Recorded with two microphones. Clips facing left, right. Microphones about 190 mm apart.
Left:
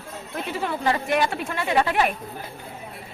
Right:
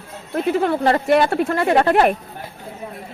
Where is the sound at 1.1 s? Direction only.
50° right (ahead or behind).